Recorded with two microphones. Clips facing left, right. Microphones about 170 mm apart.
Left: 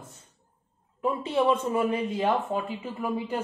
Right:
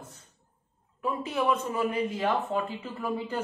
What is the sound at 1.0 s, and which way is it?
A woman's voice, 25° left (ahead or behind).